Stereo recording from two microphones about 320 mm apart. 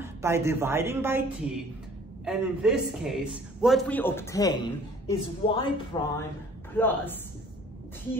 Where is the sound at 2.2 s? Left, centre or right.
Centre.